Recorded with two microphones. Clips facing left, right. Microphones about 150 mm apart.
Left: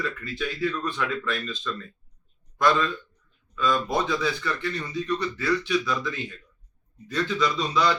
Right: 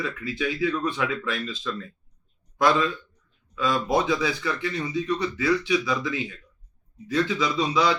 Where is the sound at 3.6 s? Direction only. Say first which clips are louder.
Right 1 dB; 5° right (ahead or behind).